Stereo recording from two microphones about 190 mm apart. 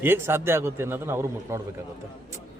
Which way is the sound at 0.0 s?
10° right (ahead or behind).